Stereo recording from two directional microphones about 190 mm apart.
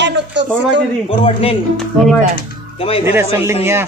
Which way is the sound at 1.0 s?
30° left (ahead or behind).